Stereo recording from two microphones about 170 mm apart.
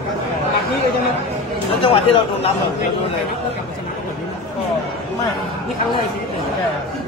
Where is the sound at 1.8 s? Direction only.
35° left (ahead or behind).